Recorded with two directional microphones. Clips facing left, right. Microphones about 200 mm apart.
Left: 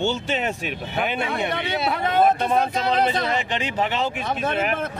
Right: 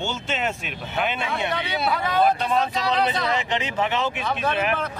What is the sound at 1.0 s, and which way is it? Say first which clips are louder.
Speech: left 1 dB; 45° left (ahead or behind).